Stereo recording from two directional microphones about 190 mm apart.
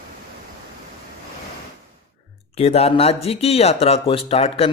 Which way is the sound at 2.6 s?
30° left (ahead or behind).